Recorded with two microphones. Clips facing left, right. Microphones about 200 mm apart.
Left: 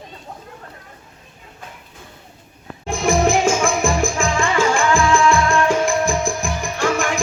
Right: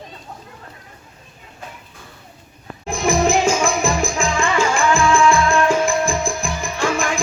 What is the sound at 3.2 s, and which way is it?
Music, 50° left (ahead or behind).